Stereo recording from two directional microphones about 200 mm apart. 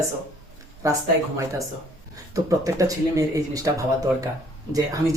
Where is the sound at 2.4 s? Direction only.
15° right (ahead or behind).